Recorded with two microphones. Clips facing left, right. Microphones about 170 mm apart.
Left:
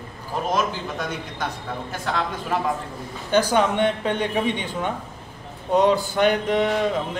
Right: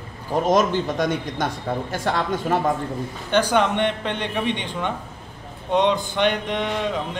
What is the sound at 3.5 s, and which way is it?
A man's voice, 5° left (ahead or behind).